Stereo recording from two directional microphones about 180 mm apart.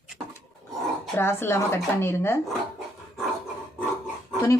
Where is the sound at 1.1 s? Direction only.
15° left (ahead or behind).